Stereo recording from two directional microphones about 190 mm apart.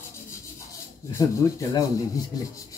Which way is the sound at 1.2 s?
15° left (ahead or behind).